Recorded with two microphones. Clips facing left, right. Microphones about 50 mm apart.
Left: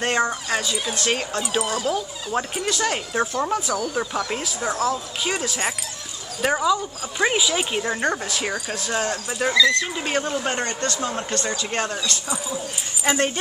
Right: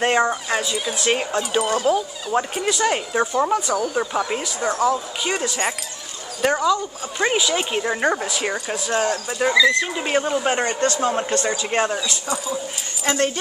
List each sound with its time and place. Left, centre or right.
0.0 s speech: centre
10.9 s a man's voice: right; by 12.2 s centre
13.0 s speech: centre